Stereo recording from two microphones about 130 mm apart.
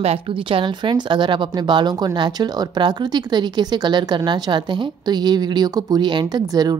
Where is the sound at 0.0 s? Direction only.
50° right (ahead or behind).